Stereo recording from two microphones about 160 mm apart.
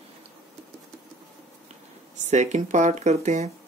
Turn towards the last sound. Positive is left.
turn(degrees=-45)  # may be behind; listen again after turning